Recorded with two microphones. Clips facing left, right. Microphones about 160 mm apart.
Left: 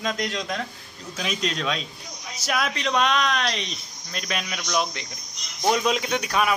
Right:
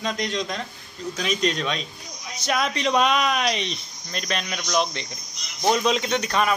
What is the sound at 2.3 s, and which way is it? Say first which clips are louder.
Speech: right 2 dB; 5° left (ahead or behind).